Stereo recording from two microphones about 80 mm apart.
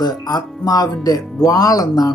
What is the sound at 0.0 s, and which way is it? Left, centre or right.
Speech, left.